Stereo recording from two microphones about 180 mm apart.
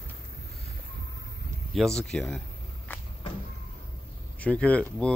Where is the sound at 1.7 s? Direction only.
5° left (ahead or behind).